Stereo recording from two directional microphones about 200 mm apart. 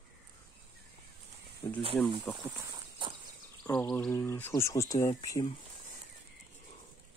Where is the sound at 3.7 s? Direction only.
10° left (ahead or behind).